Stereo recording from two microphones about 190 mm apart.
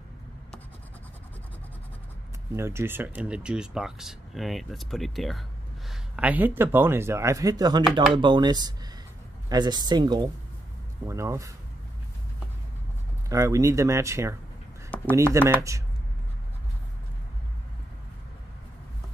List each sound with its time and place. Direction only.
2.5 s speech: 15° right (ahead or behind)
13.3 s speech: 15° right (ahead or behind)